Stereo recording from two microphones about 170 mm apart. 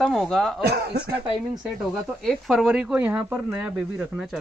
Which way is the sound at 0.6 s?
70° right (ahead or behind).